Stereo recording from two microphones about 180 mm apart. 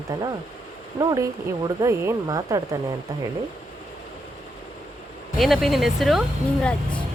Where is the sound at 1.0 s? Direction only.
20° right (ahead or behind).